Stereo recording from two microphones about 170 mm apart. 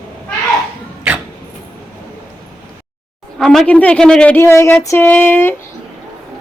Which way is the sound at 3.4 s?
5° left (ahead or behind).